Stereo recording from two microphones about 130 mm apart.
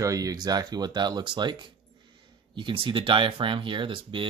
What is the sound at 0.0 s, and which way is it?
Speech, 25° right (ahead or behind).